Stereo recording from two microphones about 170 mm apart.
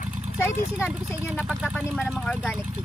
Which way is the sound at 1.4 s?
Centre (ahead or behind).